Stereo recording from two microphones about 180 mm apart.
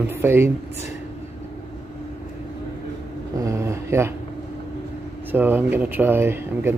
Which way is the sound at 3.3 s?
15° right (ahead or behind).